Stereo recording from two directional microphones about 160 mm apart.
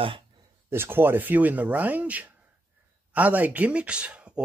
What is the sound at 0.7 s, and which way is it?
Speech, 15° right (ahead or behind).